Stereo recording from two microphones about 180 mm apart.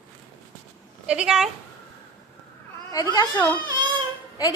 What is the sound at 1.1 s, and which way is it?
Speech, 5° right (ahead or behind).